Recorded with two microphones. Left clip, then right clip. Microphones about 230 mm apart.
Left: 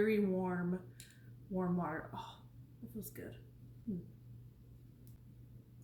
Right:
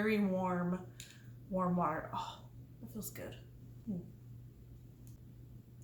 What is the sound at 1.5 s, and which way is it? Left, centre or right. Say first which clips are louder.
Speech: right 5 dB; centre.